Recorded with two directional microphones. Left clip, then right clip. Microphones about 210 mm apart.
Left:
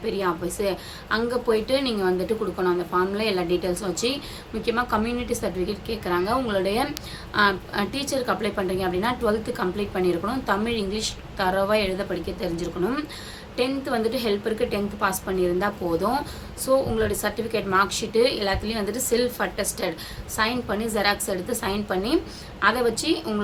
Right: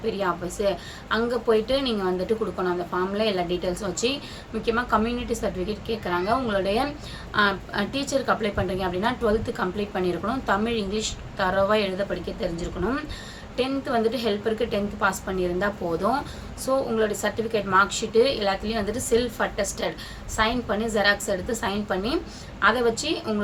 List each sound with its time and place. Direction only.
0.0 s a woman's voice: 5° left (ahead or behind)
3.2 s a woman's voice: 5° left (ahead or behind)